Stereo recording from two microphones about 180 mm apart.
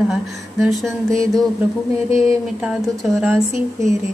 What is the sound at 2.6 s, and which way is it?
A woman's voice, centre (ahead or behind).